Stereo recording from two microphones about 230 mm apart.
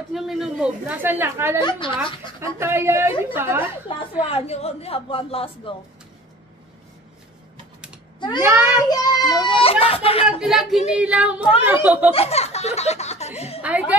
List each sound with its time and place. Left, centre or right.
0.1 s a woman's voice: centre
1.6 s a woman's voice: left
2.4 s a woman's voice: centre
4.3 s a woman's voice: left
8.4 s a woman's voice: centre
8.8 s a sound: centre
10.2 s a woman's voice: centre
12.1 s speech: left
13.6 s a woman's voice: centre